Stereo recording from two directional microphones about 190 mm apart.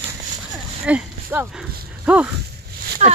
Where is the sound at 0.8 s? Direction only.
10° right (ahead or behind).